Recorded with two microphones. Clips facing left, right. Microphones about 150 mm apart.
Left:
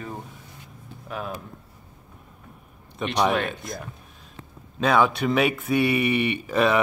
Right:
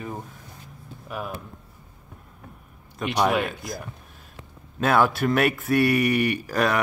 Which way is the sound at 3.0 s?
5° right (ahead or behind).